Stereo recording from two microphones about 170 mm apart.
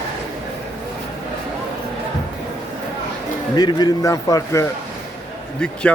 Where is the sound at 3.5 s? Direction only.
25° left (ahead or behind).